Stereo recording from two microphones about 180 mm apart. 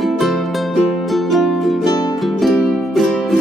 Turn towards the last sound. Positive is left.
turn(degrees=0)  # may be behind; listen again after turning